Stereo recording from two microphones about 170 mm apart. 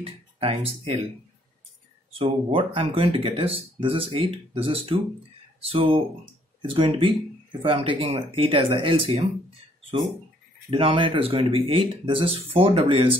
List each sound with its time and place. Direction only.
0.0 s speech: 35° right (ahead or behind)
2.1 s speech: 35° right (ahead or behind)
10.7 s speech: 30° right (ahead or behind)